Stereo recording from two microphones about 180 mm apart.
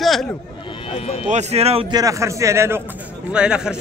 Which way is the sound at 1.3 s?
40° right (ahead or behind).